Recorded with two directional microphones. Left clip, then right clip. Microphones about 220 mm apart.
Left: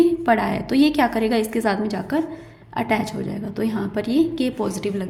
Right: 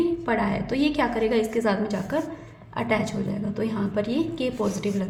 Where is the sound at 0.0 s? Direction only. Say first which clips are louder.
Left 6 dB; 30° left (ahead or behind).